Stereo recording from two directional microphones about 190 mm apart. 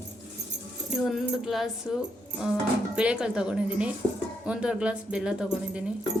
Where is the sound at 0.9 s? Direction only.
Centre (ahead or behind).